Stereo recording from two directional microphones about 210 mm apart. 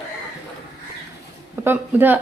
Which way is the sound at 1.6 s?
10° right (ahead or behind).